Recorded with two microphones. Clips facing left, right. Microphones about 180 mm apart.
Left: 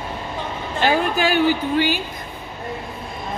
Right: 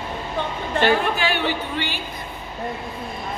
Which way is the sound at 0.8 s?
65° right (ahead or behind).